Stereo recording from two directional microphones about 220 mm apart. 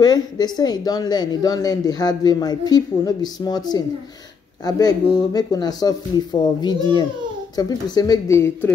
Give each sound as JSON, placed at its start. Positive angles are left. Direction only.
{"t": 0.0, "sound": "speech", "side_deg": 20}